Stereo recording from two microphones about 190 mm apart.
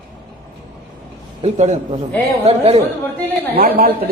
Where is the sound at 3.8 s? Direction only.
50° right (ahead or behind).